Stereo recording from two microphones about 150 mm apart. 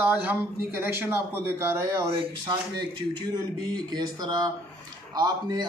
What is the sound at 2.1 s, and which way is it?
Speech, 35° right (ahead or behind).